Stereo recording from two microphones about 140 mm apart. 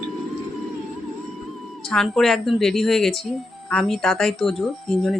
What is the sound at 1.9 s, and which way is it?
Speech, 5° left (ahead or behind).